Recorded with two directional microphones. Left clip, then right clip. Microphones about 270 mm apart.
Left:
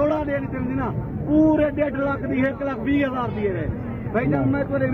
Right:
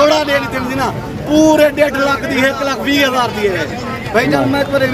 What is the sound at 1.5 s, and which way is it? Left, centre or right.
Speech, centre.